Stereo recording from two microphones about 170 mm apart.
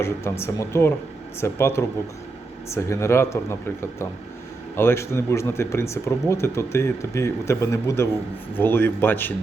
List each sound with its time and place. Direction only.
0.0 s speech: 15° left (ahead or behind)